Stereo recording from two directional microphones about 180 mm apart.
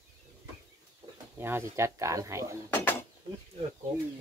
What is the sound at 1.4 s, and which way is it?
Speech, 15° right (ahead or behind).